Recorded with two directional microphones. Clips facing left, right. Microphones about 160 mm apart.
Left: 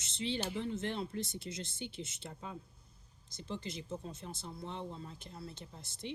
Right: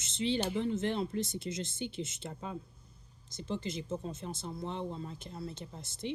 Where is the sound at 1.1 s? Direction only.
20° right (ahead or behind).